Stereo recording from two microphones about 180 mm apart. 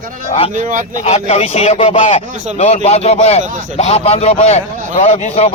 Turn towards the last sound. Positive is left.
turn(degrees=40)  # may be behind; listen again after turning